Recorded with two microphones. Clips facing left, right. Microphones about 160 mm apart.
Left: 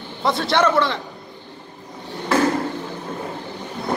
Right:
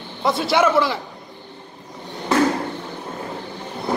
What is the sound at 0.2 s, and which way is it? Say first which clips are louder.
Speech: right 1 dB; centre (ahead or behind).